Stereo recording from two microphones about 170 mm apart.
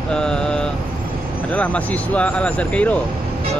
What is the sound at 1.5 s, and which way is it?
Speech, 5° left (ahead or behind).